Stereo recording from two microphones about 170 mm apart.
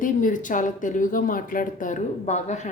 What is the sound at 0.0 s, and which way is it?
Speech, 50° left (ahead or behind).